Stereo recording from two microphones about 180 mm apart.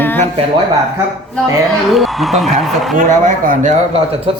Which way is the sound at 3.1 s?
45° right (ahead or behind).